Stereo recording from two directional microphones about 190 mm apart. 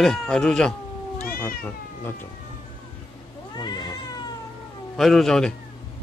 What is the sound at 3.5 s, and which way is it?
Cat, 20° left (ahead or behind).